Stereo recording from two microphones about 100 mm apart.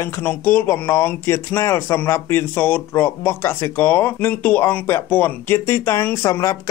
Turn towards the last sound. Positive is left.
turn(degrees=35)  # may be behind; listen again after turning